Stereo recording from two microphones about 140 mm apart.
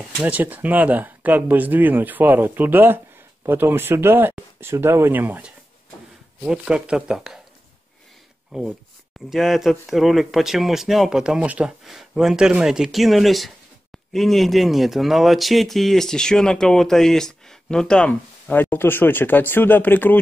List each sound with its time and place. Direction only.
0.2 s speech: 10° right (ahead or behind)
8.5 s speech: 5° right (ahead or behind); by 20.2 s 10° left (ahead or behind)